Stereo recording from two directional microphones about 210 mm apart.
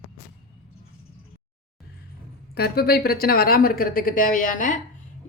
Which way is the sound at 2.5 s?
50° left (ahead or behind).